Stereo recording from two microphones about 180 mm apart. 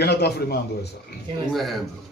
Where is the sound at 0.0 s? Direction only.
65° left (ahead or behind).